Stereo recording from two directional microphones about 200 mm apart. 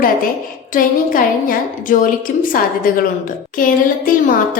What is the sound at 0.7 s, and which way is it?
A woman's voice, 45° left (ahead or behind).